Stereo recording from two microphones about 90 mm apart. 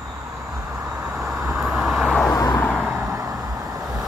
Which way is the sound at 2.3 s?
40° left (ahead or behind).